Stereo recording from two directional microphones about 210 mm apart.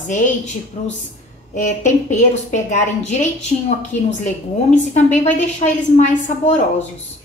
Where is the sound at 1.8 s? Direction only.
35° left (ahead or behind).